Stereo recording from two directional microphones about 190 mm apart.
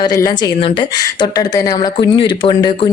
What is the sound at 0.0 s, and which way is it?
A woman's voice, 20° left (ahead or behind).